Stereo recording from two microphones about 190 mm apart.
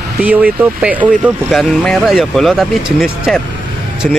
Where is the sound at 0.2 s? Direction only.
10° right (ahead or behind).